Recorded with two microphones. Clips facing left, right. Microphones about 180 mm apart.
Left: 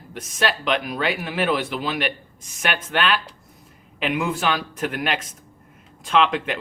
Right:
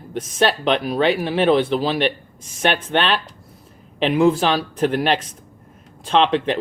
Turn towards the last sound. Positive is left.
turn(degrees=-30)  # may be behind; listen again after turning